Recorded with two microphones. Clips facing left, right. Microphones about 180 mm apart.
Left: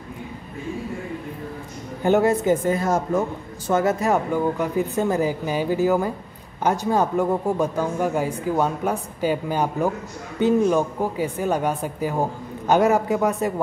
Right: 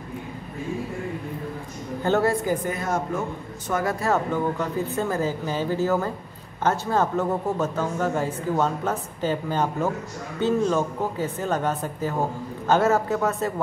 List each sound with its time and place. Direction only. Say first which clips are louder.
2.0 s a woman's voice: left 4 dB; 20° left (ahead or behind)